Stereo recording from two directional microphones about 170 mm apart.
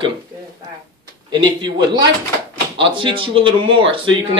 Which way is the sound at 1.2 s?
25° right (ahead or behind).